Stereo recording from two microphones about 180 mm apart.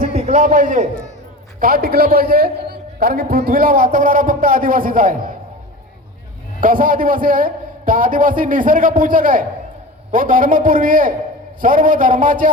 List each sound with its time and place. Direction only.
0.1 s a man's voice: 35° right (ahead or behind)
6.6 s a man's voice: 50° right (ahead or behind)